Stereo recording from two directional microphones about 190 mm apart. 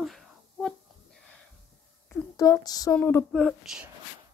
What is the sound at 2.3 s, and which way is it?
Speech, 20° left (ahead or behind).